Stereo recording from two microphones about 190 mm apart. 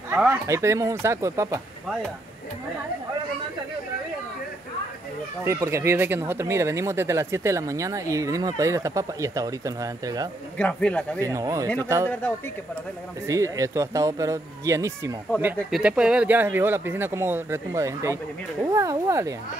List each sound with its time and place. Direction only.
0.1 s speech: 10° right (ahead or behind)
5.4 s speech: 15° right (ahead or behind)
10.6 s a man's voice: 5° left (ahead or behind)
11.1 s speech: 15° right (ahead or behind)
13.3 s speech: 15° right (ahead or behind)
15.3 s speech: 5° right (ahead or behind)